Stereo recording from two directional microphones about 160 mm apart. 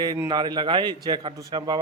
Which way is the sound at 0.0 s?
25° right (ahead or behind).